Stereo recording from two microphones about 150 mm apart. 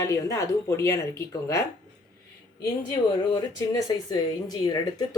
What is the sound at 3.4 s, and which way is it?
A woman's voice, 25° left (ahead or behind).